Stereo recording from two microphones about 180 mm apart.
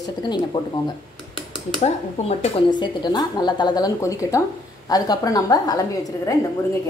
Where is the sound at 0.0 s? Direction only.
25° left (ahead or behind).